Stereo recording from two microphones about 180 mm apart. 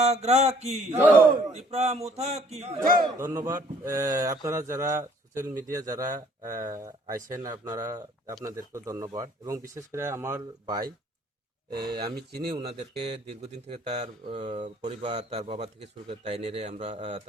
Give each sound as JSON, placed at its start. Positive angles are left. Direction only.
{"t": 0.0, "sound": "a man's voice", "side_deg": -35}
{"t": 3.4, "sound": "a man's voice", "side_deg": -15}